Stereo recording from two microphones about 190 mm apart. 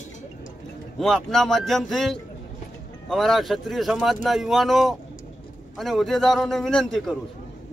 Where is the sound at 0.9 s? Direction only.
Centre (ahead or behind).